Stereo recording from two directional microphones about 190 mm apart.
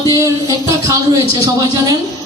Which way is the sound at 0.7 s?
20° right (ahead or behind).